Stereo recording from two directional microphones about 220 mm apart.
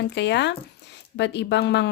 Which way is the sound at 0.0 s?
50° left (ahead or behind).